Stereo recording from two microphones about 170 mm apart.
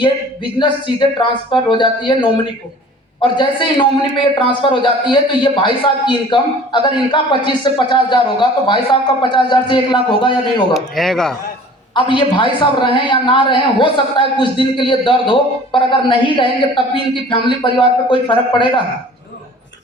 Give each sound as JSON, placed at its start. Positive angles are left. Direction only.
{"t": 0.6, "sound": "a man's voice", "side_deg": 30}
{"t": 10.8, "sound": "speech", "side_deg": 0}
{"t": 11.9, "sound": "a man's voice", "side_deg": 30}